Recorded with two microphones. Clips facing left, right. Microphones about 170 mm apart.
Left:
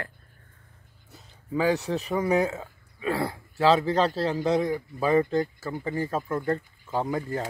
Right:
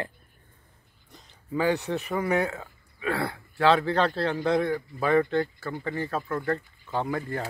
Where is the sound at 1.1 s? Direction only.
5° left (ahead or behind).